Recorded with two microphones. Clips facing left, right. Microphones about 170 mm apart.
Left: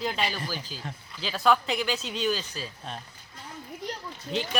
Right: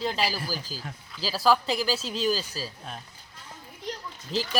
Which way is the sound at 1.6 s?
35° right (ahead or behind).